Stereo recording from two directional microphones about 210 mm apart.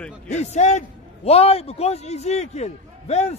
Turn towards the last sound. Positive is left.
turn(degrees=30)  # may be behind; listen again after turning